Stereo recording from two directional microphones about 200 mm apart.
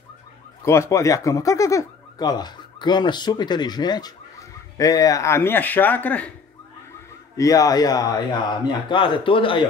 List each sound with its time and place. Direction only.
0.7 s speech: 15° left (ahead or behind)
7.3 s speech: 15° left (ahead or behind)